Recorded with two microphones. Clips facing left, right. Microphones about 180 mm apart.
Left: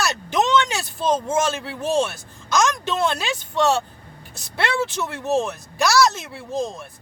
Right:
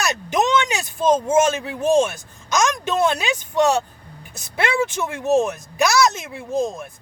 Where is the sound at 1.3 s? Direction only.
15° right (ahead or behind).